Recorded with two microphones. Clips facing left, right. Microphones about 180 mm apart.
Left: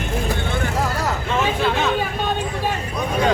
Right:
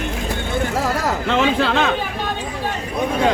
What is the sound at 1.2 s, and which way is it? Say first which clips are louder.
Speech: right 3 dB; 90° right.